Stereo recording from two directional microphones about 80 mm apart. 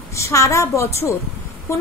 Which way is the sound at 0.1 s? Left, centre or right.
Left.